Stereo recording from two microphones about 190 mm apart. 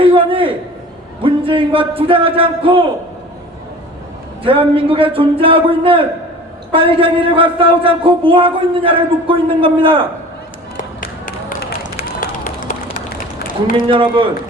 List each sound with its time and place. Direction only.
0.0 s a sound: 30° right (ahead or behind)
1.2 s a man's voice: 30° right (ahead or behind)
4.4 s a man's voice: 30° right (ahead or behind)
10.8 s run: 45° left (ahead or behind)
13.1 s run: 45° left (ahead or behind)
13.8 s a man's voice: 25° right (ahead or behind)